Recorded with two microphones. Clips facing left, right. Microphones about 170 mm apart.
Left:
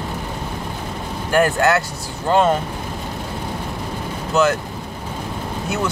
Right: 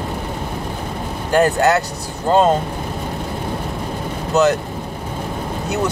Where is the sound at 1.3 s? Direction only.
20° right (ahead or behind).